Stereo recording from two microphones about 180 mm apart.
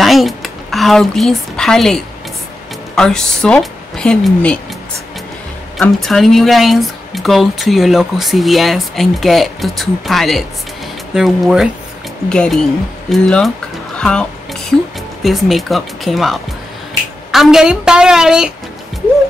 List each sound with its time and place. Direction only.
0.0 s speech: centre (ahead or behind)
3.0 s speech: 5° left (ahead or behind)
5.8 s speech: centre (ahead or behind)
13.9 s music: 5° left (ahead or behind)
15.2 s speech: centre (ahead or behind)